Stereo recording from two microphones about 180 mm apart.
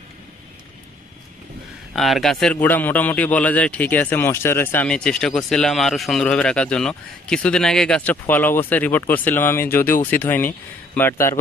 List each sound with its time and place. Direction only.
2.0 s a man's voice: centre (ahead or behind)